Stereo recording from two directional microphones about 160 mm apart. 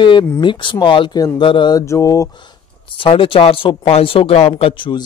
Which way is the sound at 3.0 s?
35° left (ahead or behind).